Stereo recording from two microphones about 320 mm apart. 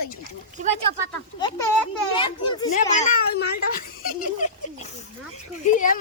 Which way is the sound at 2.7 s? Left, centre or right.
Left.